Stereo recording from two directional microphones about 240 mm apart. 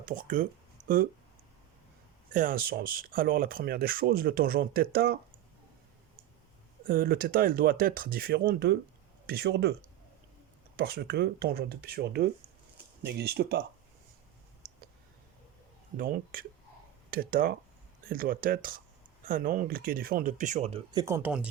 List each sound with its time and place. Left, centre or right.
0.0 s speech: right
0.8 s a sound: right
2.3 s speech: right
6.8 s speech: right
10.8 s speech: right
16.0 s speech: right
21.0 s speech: centre